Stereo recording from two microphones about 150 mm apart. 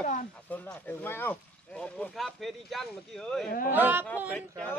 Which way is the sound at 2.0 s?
Centre (ahead or behind).